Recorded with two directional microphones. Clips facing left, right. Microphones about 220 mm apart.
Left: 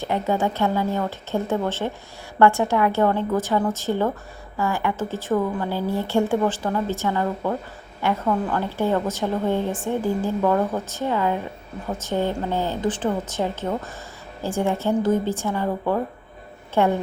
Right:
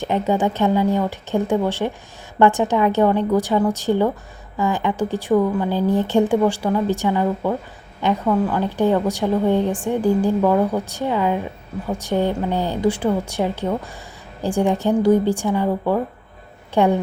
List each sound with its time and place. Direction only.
0.0 s a woman's voice: 15° right (ahead or behind)